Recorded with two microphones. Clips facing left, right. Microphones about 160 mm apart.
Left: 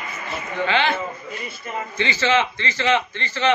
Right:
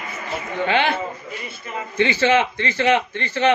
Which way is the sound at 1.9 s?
55° right (ahead or behind).